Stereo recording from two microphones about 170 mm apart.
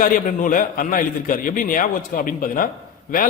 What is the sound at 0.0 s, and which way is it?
A man's voice, 55° left (ahead or behind).